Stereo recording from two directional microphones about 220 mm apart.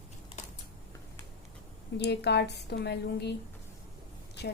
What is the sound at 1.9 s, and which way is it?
A woman's voice, 50° left (ahead or behind).